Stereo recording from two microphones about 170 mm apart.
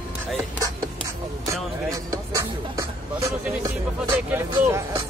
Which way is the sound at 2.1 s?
20° right (ahead or behind).